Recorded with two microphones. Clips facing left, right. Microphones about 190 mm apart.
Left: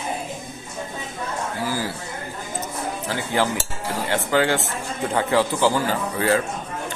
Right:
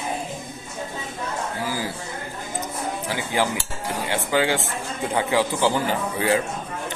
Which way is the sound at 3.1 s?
15° right (ahead or behind).